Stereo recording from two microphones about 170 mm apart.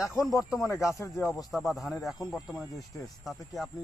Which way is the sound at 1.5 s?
Centre (ahead or behind).